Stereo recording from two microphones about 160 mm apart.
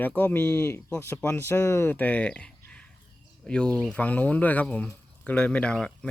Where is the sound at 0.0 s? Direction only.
10° left (ahead or behind).